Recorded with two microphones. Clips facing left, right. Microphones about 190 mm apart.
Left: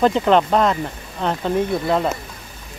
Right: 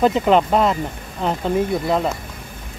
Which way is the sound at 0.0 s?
5° right (ahead or behind).